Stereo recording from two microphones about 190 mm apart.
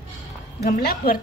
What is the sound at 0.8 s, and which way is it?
Speech, 50° left (ahead or behind).